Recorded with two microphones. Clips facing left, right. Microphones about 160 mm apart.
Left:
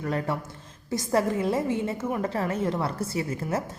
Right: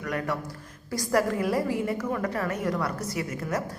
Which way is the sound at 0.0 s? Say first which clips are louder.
Left 1 dB; 30° left (ahead or behind).